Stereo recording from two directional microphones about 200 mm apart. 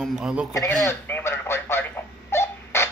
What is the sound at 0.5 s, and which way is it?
Telephone, 15° left (ahead or behind).